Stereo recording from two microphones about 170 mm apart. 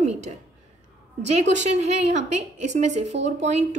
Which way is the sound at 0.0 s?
40° right (ahead or behind).